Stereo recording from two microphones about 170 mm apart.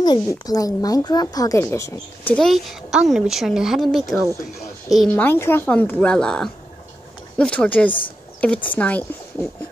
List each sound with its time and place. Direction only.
0.0 s speech: 20° left (ahead or behind)
2.3 s a woman's voice: centre (ahead or behind)
5.1 s a woman's voice: 10° left (ahead or behind)